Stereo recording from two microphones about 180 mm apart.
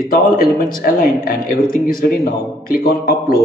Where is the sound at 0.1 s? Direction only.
50° left (ahead or behind).